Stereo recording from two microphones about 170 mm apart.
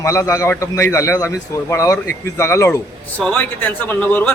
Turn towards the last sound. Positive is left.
turn(degrees=10)  # may be behind; listen again after turning